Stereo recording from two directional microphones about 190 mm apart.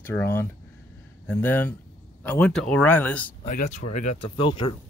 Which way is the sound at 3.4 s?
40° left (ahead or behind).